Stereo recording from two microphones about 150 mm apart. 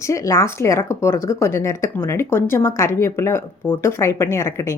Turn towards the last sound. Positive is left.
turn(degrees=20)  # may be behind; listen again after turning